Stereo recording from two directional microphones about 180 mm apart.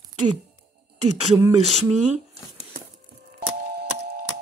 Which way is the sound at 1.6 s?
35° right (ahead or behind).